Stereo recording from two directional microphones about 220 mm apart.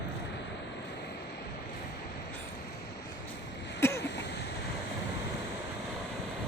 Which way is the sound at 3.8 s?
15° left (ahead or behind).